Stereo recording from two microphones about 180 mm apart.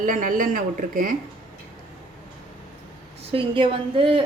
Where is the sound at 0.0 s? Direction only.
45° right (ahead or behind).